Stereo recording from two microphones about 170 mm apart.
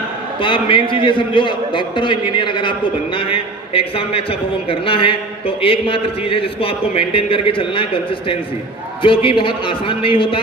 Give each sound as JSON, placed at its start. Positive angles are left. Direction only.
{"t": 0.4, "sound": "a man's voice", "side_deg": 30}